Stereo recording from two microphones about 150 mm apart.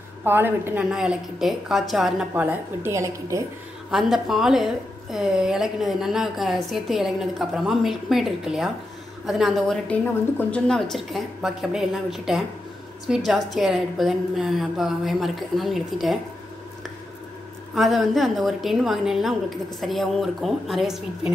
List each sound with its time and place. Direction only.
0.2 s a woman's voice: 15° right (ahead or behind)
3.9 s a woman's voice: centre (ahead or behind)
17.7 s a woman's voice: centre (ahead or behind)